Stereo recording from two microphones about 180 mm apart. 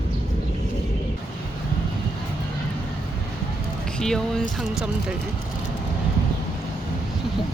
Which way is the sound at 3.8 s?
5° left (ahead or behind).